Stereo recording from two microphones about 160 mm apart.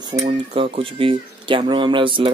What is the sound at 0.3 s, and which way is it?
Speech, 35° right (ahead or behind).